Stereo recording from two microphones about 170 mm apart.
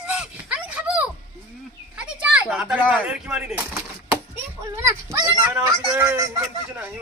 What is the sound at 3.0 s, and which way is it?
Speech, 5° right (ahead or behind).